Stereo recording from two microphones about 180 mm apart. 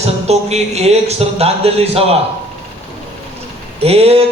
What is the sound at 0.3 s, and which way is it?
Speech, 35° right (ahead or behind).